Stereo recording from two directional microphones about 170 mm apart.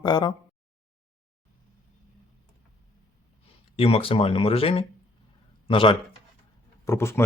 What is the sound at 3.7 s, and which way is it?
A man's voice, 35° left (ahead or behind).